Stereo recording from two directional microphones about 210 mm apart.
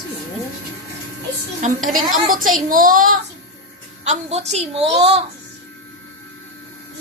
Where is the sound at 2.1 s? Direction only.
40° right (ahead or behind).